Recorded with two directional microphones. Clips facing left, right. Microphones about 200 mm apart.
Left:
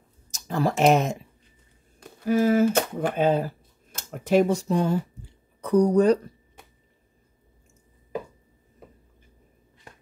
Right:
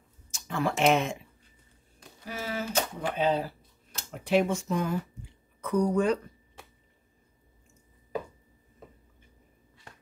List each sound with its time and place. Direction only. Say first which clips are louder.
0.3 s speech: left 5 dB; 40° left (ahead or behind)
2.2 s speech: left 15 dB; 50° left (ahead or behind)